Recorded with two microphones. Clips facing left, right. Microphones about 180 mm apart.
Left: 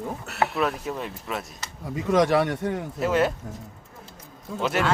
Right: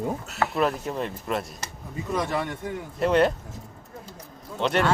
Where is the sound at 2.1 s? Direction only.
90° left; by 2.8 s 70° left (ahead or behind).